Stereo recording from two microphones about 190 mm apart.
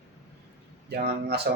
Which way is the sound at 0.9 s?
60° right (ahead or behind).